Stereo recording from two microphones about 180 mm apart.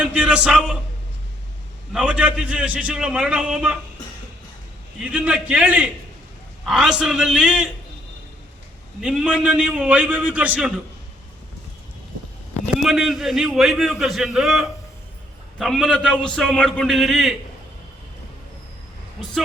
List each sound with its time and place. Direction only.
0.0 s a man's voice: 5° right (ahead or behind)
1.9 s a man's voice: 5° right (ahead or behind)
5.0 s a man's voice: 5° right (ahead or behind)
9.0 s a man's voice: 5° right (ahead or behind)
12.8 s a man's voice: centre (ahead or behind)